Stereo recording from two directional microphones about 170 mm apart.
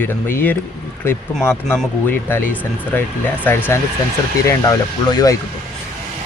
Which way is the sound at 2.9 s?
10° left (ahead or behind).